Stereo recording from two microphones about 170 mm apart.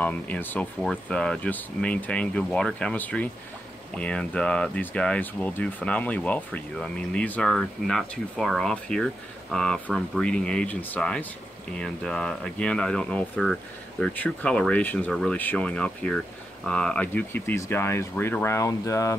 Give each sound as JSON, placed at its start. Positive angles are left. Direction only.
{"t": 0.0, "sound": "speech", "side_deg": 10}